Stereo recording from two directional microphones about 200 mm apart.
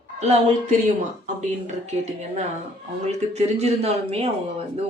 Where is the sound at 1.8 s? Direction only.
35° right (ahead or behind).